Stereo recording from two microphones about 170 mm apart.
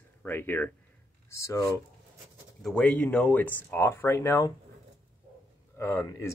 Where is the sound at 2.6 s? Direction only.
5° left (ahead or behind).